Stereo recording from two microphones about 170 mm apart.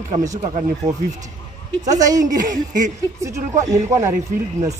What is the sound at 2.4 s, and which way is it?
Speech, 50° right (ahead or behind).